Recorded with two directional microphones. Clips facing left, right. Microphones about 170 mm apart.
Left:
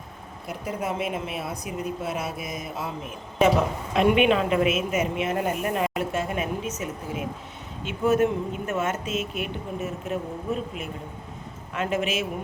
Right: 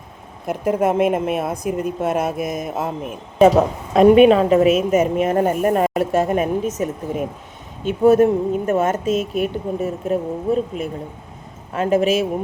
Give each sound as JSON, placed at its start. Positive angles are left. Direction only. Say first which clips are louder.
{"t": 0.4, "sound": "a woman's voice", "louder": "right 11 dB", "side_deg": -50}
{"t": 3.9, "sound": "a woman's voice", "louder": "right 10 dB", "side_deg": -40}